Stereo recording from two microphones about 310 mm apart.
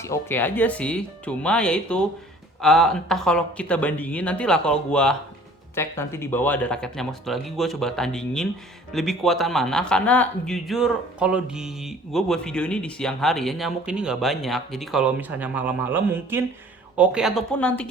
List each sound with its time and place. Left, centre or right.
0.0 s speech: centre